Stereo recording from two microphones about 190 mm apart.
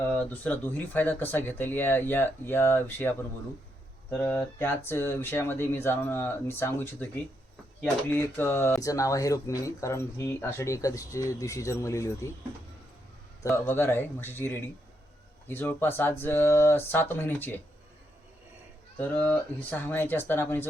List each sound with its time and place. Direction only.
0.0 s speech: 10° left (ahead or behind)
8.1 s speech: 10° left (ahead or behind)
13.5 s speech: 10° left (ahead or behind)
18.9 s speech: 10° left (ahead or behind)